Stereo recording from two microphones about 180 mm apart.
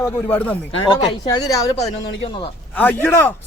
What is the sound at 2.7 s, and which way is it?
Speech, 10° left (ahead or behind).